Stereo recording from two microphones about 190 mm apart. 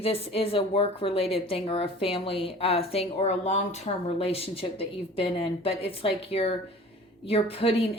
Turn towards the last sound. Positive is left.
turn(degrees=30)  # may be behind; listen again after turning